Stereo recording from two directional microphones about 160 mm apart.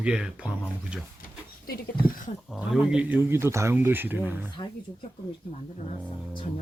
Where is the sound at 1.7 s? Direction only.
65° left (ahead or behind).